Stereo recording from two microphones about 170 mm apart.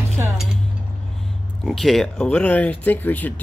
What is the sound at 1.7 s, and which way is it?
Speech, centre (ahead or behind).